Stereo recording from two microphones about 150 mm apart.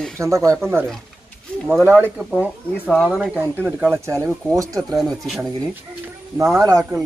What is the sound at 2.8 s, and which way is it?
Speech, 5° left (ahead or behind).